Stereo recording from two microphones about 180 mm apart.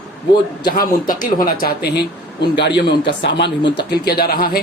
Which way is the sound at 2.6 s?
75° left (ahead or behind).